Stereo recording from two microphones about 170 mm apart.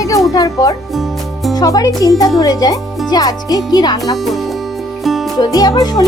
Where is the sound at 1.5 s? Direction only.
20° left (ahead or behind).